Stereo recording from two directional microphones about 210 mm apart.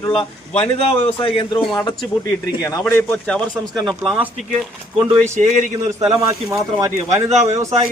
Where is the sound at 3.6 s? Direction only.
20° right (ahead or behind).